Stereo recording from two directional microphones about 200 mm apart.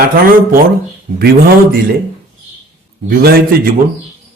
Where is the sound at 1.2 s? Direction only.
50° right (ahead or behind).